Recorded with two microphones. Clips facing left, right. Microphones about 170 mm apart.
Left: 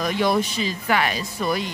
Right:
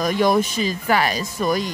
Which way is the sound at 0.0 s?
45° right (ahead or behind).